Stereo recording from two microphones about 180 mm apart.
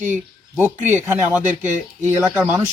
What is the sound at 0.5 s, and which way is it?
Speech, 10° right (ahead or behind).